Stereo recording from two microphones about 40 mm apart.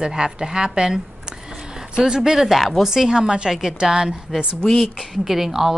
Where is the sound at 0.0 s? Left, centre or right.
Centre.